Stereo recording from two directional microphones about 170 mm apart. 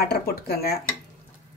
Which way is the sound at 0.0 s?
65° left (ahead or behind).